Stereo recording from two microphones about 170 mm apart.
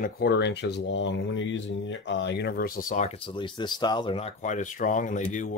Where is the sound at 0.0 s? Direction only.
75° left (ahead or behind); by 3.1 s 50° left (ahead or behind).